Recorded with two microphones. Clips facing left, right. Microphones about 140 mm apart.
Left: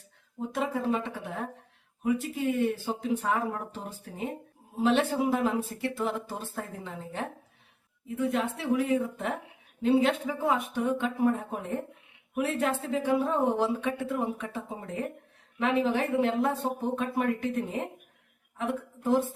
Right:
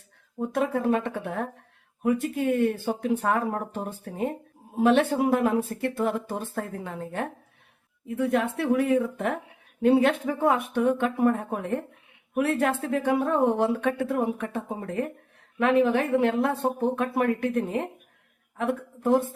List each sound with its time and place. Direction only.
0.3 s a woman's voice: 55° right (ahead or behind)